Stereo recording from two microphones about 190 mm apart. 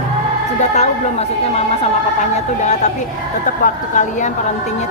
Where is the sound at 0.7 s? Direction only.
35° left (ahead or behind).